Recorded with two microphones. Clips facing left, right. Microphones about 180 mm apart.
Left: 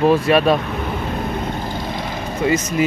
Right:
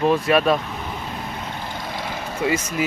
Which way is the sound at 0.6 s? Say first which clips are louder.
Left 7 dB; 60° left (ahead or behind).